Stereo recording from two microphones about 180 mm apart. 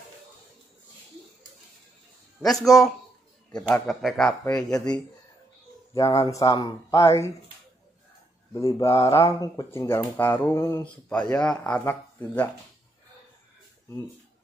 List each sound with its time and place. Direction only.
2.4 s speech: centre (ahead or behind)
5.9 s speech: 20° left (ahead or behind)
8.5 s speech: 15° left (ahead or behind)